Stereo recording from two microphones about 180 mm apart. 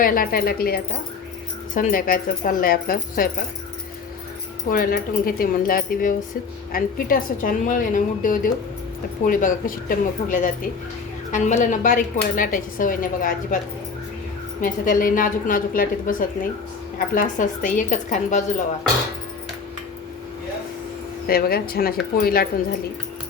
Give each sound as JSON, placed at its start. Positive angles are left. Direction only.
{"t": 0.0, "sound": "speech", "side_deg": 55}
{"t": 4.7, "sound": "speech", "side_deg": 50}
{"t": 14.6, "sound": "speech", "side_deg": 50}
{"t": 21.2, "sound": "speech", "side_deg": 55}